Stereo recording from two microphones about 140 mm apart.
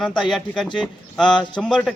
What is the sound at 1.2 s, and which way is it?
Speech, 35° left (ahead or behind).